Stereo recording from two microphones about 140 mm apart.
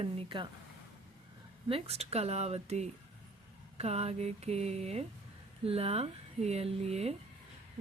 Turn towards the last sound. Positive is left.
turn(degrees=-45)  # may be behind; listen again after turning